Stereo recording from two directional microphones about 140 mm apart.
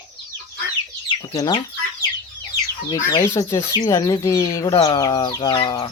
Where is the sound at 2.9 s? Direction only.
30° left (ahead or behind).